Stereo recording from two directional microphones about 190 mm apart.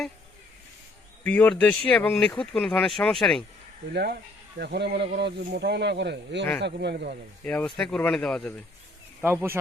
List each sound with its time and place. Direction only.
1.2 s speech: 5° left (ahead or behind)
3.9 s speech: 55° right (ahead or behind)
7.4 s speech: 5° left (ahead or behind)
9.2 s speech: 10° right (ahead or behind)